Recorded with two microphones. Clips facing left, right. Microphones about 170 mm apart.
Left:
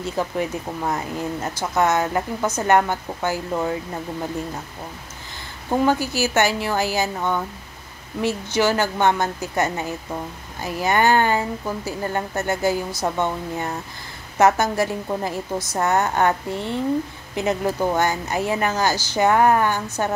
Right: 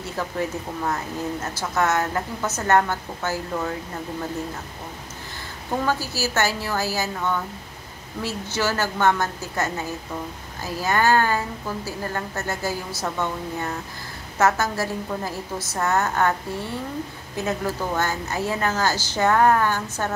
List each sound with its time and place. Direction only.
1.6 s a woman's voice: 15° left (ahead or behind)
5.9 s a woman's voice: 15° left (ahead or behind)
10.8 s a woman's voice: 20° left (ahead or behind)